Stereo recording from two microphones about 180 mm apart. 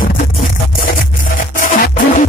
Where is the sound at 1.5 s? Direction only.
50° left (ahead or behind).